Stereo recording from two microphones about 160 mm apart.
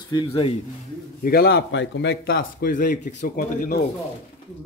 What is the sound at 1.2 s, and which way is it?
A man's voice, 75° left (ahead or behind).